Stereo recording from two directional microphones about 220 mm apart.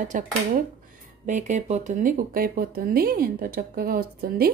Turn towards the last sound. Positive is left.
turn(degrees=-40)  # may be behind; listen again after turning